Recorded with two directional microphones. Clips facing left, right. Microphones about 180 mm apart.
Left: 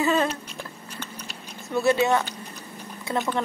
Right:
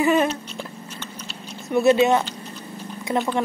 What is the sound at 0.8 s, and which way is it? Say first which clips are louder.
Chewing: right 2 dB; 10° left (ahead or behind).